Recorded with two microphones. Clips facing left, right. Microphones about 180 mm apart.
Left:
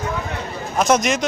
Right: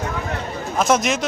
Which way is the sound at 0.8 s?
5° right (ahead or behind).